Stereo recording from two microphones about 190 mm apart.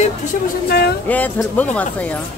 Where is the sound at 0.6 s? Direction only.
55° left (ahead or behind).